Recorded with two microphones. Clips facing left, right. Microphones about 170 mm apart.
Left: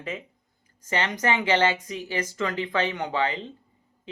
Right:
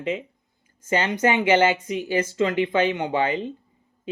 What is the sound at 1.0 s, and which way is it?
Speech, 25° right (ahead or behind).